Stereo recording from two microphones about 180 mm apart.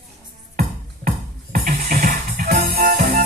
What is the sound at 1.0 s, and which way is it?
Music, 50° right (ahead or behind).